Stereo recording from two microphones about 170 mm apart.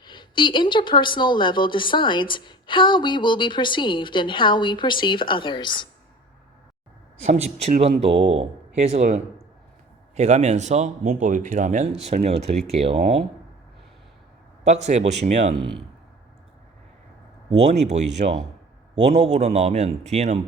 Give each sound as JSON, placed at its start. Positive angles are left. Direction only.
{"t": 0.0, "sound": "speech", "side_deg": 25}
{"t": 7.3, "sound": "speech", "side_deg": -40}
{"t": 10.2, "sound": "speech", "side_deg": -40}
{"t": 14.7, "sound": "speech", "side_deg": -40}
{"t": 17.6, "sound": "speech", "side_deg": -40}